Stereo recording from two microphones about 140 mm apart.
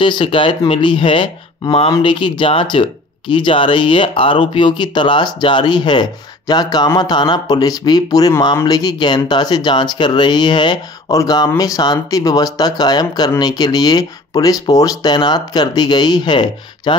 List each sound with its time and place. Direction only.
0.0 s speech: 35° left (ahead or behind)